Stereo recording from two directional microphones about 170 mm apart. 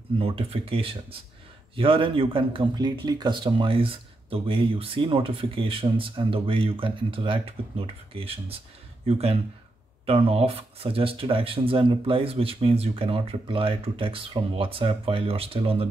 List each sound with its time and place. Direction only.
0.2 s a man's voice: 35° right (ahead or behind)